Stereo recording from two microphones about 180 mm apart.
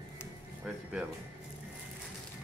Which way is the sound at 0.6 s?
5° right (ahead or behind).